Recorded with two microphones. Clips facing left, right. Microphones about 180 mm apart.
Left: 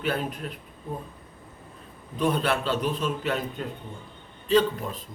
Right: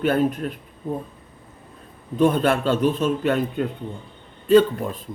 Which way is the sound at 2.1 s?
50° right (ahead or behind).